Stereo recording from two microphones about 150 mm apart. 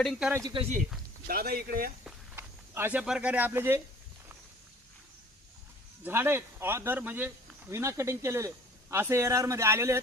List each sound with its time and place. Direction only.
0.0 s speech: centre (ahead or behind)
0.4 s speech: 35° right (ahead or behind)
1.3 s speech: 90° right
2.3 s speech: 15° right (ahead or behind)
6.1 s speech: 15° right (ahead or behind)